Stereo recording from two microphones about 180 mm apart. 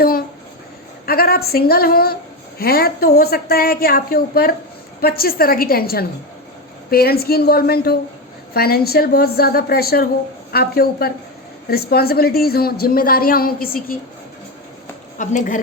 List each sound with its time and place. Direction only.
1.0 s a woman's voice: 55° left (ahead or behind)
15.2 s speech: 45° left (ahead or behind)